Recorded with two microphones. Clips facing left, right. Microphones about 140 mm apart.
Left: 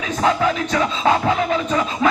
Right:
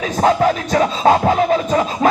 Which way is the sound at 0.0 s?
40° right (ahead or behind).